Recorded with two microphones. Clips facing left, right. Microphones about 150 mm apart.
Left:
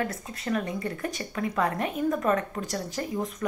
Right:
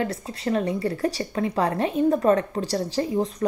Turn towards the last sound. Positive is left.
turn(degrees=-30)  # may be behind; listen again after turning